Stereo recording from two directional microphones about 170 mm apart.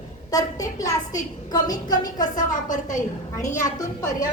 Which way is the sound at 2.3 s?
50° left (ahead or behind).